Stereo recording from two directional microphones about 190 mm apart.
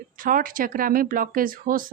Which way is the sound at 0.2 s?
45° right (ahead or behind).